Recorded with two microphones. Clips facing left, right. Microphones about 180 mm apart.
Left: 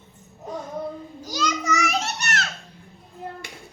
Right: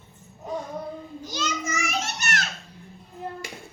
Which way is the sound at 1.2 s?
40° left (ahead or behind).